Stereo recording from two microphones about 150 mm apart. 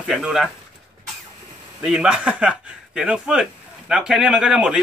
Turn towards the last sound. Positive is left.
turn(degrees=-5)  # may be behind; listen again after turning